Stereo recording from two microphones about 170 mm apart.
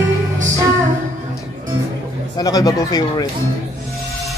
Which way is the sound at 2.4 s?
20° left (ahead or behind).